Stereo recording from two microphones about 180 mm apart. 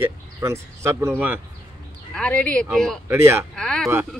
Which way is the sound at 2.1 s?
5° left (ahead or behind).